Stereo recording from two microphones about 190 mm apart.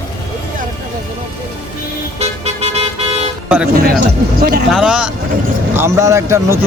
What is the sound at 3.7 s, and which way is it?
Speech, 55° right (ahead or behind).